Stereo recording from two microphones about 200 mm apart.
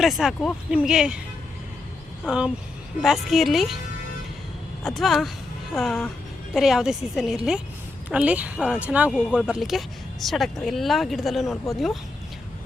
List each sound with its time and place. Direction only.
0.0 s speech: centre (ahead or behind)
2.2 s speech: 5° right (ahead or behind)
4.8 s speech: centre (ahead or behind)
11.5 s speech: 15° left (ahead or behind)